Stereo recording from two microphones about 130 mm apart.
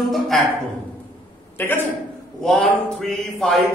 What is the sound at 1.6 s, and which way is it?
Speech, 15° left (ahead or behind).